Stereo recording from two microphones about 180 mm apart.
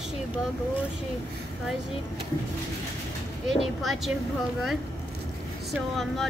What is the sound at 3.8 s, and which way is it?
Speech, centre (ahead or behind).